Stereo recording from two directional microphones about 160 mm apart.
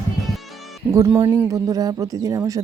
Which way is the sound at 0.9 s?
20° right (ahead or behind).